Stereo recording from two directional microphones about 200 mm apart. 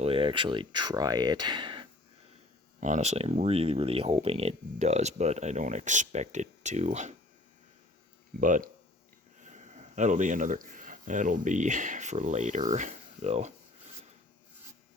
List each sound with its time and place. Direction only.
0.0 s speech: 25° right (ahead or behind)
2.8 s speech: 35° right (ahead or behind)
8.4 s speech: 40° right (ahead or behind)